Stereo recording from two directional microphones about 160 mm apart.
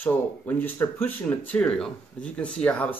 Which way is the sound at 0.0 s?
10° left (ahead or behind).